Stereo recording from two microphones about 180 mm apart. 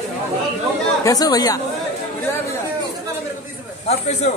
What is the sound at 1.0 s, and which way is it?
Speech, 20° left (ahead or behind).